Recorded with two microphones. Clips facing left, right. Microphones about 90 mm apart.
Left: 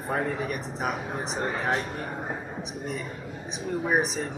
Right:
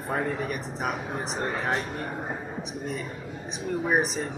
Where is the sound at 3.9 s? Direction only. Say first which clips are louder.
Even; centre (ahead or behind).